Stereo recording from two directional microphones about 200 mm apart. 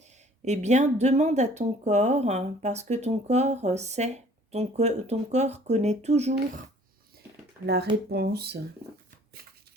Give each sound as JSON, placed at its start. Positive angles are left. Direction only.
{"t": 0.4, "sound": "speech", "side_deg": -35}
{"t": 8.1, "sound": "speech", "side_deg": -55}